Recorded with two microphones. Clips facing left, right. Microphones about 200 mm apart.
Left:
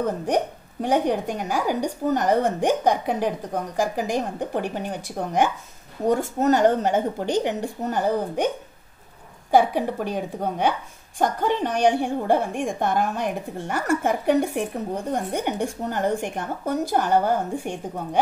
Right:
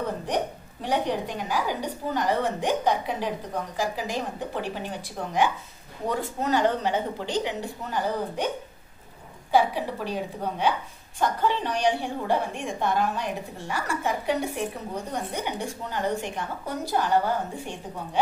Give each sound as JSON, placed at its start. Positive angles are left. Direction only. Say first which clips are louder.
{"t": 0.8, "sound": "a woman's voice", "louder": "left 5 dB", "side_deg": 45}
{"t": 9.5, "sound": "a woman's voice", "louder": "left 4 dB", "side_deg": 50}